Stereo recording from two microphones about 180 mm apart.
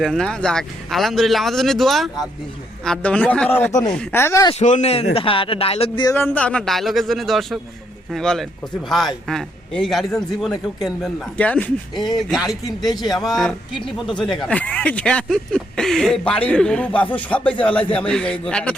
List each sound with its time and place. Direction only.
0.0 s a man's voice: centre (ahead or behind)
3.7 s speech: 20° left (ahead or behind)
4.6 s speech: 40° left (ahead or behind)
6.2 s a man's voice: 5° left (ahead or behind)